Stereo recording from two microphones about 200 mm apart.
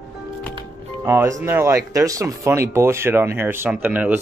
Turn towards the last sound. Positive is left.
turn(degrees=-10)  # may be behind; listen again after turning